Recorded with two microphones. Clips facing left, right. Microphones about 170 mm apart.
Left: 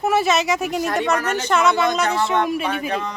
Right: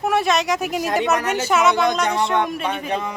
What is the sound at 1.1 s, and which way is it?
Speech, 15° right (ahead or behind).